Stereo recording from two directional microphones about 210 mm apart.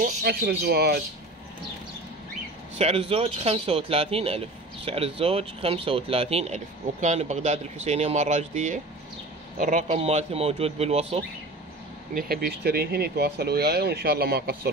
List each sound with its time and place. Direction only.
0.0 s speech: 50° right (ahead or behind)
2.8 s speech: 30° right (ahead or behind)
12.1 s speech: 45° right (ahead or behind)